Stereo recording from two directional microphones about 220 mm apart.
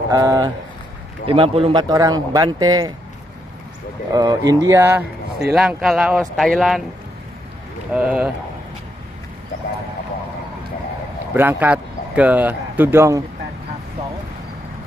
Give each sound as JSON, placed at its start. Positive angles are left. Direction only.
{"t": 0.1, "sound": "speech", "side_deg": -15}
{"t": 4.1, "sound": "speech", "side_deg": -15}
{"t": 7.9, "sound": "speech", "side_deg": -5}
{"t": 11.3, "sound": "speech", "side_deg": -10}